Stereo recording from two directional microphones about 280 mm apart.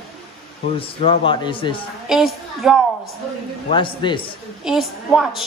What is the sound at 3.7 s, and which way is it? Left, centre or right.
Speech, centre.